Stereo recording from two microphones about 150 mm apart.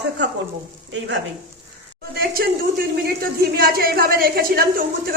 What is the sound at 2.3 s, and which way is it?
A woman's voice, 85° right.